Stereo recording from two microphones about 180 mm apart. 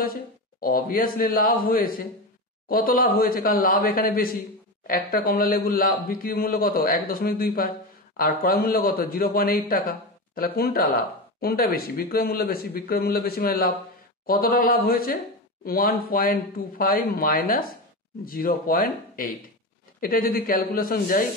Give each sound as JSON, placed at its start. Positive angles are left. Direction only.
{"t": 0.0, "sound": "a man's voice", "side_deg": 55}